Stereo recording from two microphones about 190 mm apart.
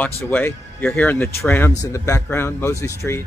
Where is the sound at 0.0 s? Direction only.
10° left (ahead or behind).